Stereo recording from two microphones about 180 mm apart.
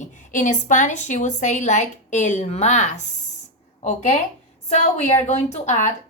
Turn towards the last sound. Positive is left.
turn(degrees=40)  # may be behind; listen again after turning